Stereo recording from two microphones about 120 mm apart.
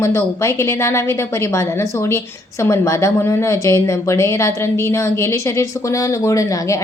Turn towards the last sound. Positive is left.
turn(degrees=25)  # may be behind; listen again after turning